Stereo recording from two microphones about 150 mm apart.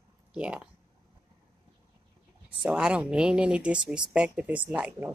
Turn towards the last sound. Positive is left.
turn(degrees=-10)  # may be behind; listen again after turning